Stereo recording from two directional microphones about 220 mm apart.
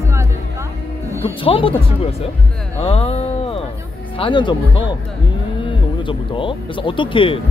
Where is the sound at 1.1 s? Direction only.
10° right (ahead or behind).